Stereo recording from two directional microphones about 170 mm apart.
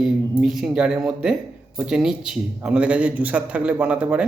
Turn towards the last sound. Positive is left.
turn(degrees=-5)  # may be behind; listen again after turning